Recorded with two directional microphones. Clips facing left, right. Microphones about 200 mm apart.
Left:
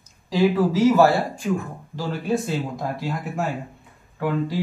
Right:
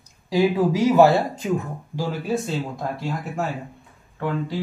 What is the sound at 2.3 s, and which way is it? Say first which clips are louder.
Speech: left 4 dB; centre (ahead or behind).